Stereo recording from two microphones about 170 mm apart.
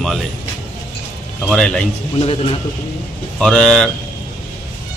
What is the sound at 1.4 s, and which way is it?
Speech, 5° left (ahead or behind).